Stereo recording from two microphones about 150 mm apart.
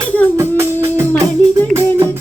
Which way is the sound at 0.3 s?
15° right (ahead or behind).